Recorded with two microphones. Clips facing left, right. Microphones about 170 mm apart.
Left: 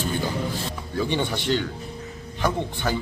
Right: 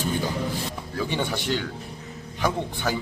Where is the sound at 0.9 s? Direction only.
5° right (ahead or behind).